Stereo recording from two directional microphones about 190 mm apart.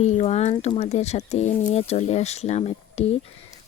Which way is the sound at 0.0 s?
35° left (ahead or behind).